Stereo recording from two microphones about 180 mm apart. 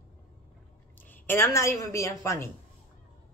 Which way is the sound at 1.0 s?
10° left (ahead or behind).